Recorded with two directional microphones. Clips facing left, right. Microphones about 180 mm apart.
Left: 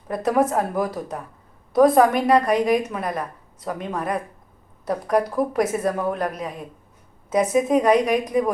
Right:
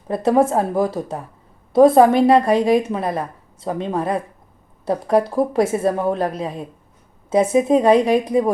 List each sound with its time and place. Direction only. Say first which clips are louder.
0.1 s a woman's voice: right 4 dB; 30° right (ahead or behind)